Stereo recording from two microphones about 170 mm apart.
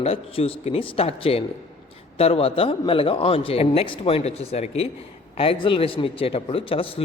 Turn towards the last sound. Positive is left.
turn(degrees=35)  # may be behind; listen again after turning